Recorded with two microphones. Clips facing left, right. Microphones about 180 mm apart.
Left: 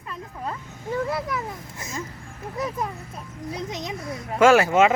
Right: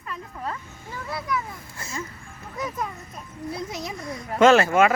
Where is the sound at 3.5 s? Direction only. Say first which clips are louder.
Left 1 dB; 20° left (ahead or behind).